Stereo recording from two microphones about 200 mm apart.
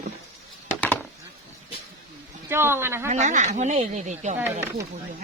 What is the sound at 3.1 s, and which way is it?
Speech, 35° right (ahead or behind).